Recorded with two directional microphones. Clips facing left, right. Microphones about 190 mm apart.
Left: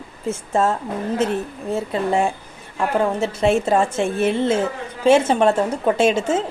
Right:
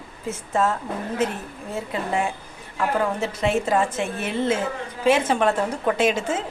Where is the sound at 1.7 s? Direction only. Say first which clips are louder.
Left 5 dB; 30° left (ahead or behind).